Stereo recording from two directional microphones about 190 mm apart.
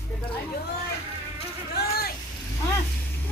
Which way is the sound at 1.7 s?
55° left (ahead or behind).